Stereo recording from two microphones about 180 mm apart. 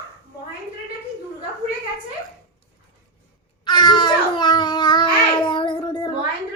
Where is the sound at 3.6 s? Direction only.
25° left (ahead or behind).